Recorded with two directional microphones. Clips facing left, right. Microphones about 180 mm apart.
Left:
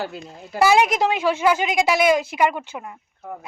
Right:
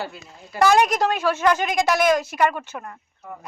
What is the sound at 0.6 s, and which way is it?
A woman's voice, 10° left (ahead or behind).